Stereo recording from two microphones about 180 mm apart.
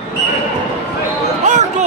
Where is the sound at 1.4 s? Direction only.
40° right (ahead or behind).